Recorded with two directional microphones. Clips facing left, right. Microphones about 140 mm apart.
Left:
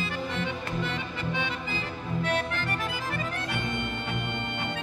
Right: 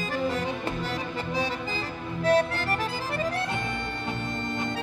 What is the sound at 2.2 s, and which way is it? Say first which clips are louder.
Music: right 9 dB; 35° right (ahead or behind).